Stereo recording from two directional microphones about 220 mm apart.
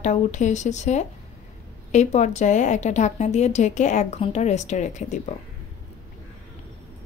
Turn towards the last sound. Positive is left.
turn(degrees=35)  # may be behind; listen again after turning